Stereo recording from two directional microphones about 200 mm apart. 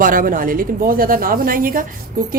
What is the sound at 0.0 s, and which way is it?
Speech, 45° right (ahead or behind).